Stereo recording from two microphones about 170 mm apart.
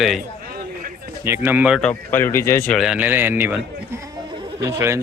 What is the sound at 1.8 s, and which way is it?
Speech, 10° left (ahead or behind).